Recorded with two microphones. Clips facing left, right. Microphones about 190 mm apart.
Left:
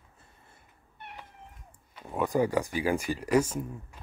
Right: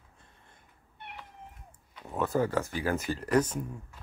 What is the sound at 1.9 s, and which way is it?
Speech, 10° left (ahead or behind).